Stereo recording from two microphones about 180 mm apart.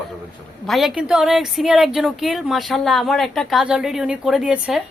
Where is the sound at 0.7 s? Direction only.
Centre (ahead or behind).